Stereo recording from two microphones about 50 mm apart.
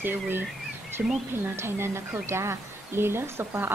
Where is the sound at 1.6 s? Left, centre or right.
Right.